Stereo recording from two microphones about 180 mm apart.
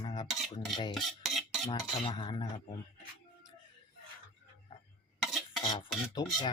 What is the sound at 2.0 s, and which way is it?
Speech, 30° left (ahead or behind).